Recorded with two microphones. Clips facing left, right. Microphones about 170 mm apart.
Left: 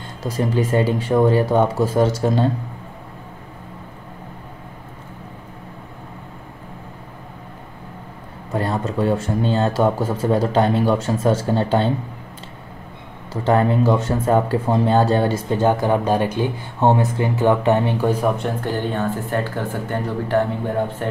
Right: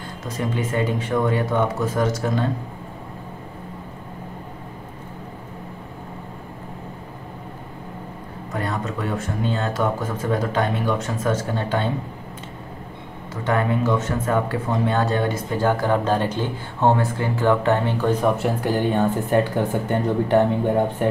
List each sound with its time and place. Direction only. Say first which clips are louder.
0.2 s speech: left 5 dB; 30° left (ahead or behind)
8.5 s speech: left 5 dB; 30° left (ahead or behind)
13.3 s speech: left 4 dB; 30° left (ahead or behind)
15.8 s speech: left 2 dB; 15° left (ahead or behind)
18.4 s speech: right 2 dB; 10° right (ahead or behind)